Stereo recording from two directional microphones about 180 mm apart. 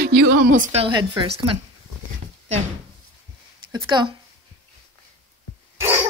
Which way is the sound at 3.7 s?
25° right (ahead or behind).